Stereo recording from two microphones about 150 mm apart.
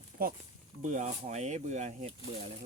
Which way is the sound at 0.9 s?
50° right (ahead or behind).